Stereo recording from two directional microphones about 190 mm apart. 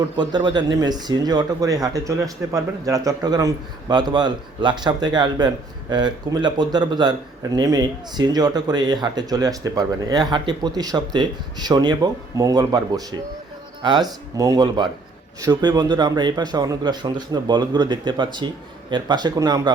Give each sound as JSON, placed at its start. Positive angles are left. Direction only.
{"t": 0.2, "sound": "a man's voice", "side_deg": -20}